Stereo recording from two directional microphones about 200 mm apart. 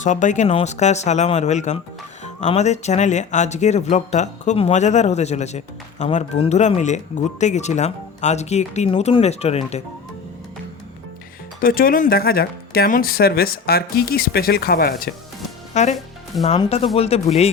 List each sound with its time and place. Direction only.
0.0 s speech: 40° left (ahead or behind)
11.6 s speech: 45° left (ahead or behind)
15.7 s speech: 35° left (ahead or behind)